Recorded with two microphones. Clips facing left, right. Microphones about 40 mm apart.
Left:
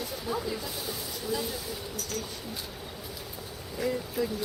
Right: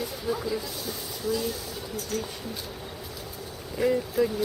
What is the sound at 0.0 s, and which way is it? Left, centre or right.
Speech, centre.